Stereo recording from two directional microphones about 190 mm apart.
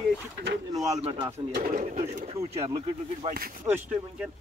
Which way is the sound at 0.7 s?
20° right (ahead or behind).